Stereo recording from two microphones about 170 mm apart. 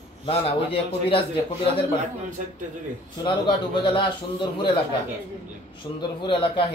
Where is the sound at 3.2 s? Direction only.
30° left (ahead or behind).